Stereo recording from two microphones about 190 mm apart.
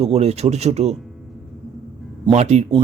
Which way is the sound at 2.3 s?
35° right (ahead or behind).